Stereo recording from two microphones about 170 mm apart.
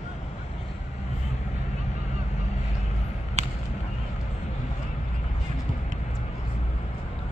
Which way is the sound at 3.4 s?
40° right (ahead or behind).